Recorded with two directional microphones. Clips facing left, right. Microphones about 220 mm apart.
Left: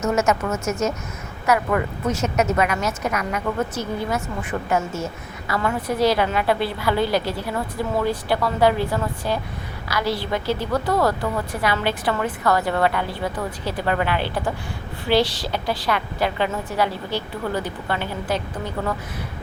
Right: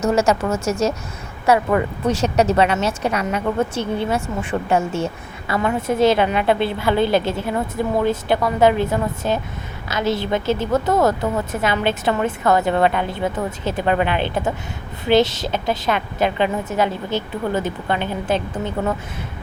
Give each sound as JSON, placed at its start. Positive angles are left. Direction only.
{"t": 0.0, "sound": "a woman's voice", "side_deg": -30}